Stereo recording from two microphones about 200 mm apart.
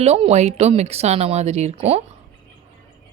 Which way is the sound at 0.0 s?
30° right (ahead or behind).